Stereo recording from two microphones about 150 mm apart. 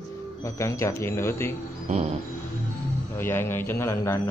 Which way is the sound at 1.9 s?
45° right (ahead or behind).